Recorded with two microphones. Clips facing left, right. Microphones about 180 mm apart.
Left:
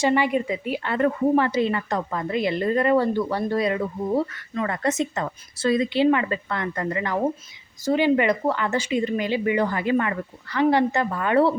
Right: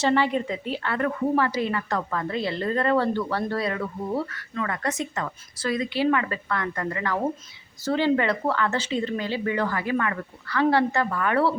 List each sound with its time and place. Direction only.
0.0 s a woman's voice: 15° left (ahead or behind)